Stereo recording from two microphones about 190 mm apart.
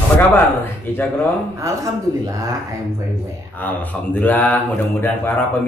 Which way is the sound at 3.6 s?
10° left (ahead or behind).